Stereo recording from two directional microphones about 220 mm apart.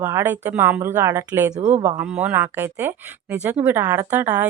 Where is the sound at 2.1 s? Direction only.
5° right (ahead or behind).